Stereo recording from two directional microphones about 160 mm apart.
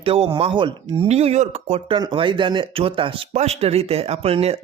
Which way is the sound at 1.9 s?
30° right (ahead or behind).